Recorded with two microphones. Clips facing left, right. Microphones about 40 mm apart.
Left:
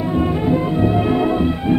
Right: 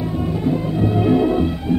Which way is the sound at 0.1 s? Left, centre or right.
Left.